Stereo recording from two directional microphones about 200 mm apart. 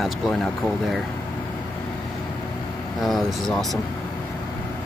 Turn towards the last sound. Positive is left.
turn(degrees=0)  # may be behind; listen again after turning